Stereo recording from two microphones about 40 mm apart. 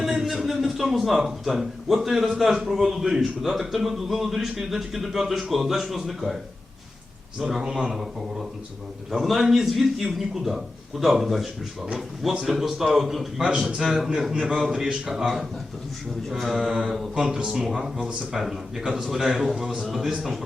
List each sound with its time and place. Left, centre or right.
0.0 s a sound: centre
1.5 s a man's voice: centre
9.1 s a man's voice: centre